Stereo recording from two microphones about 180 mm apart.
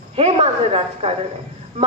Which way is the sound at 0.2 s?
35° right (ahead or behind).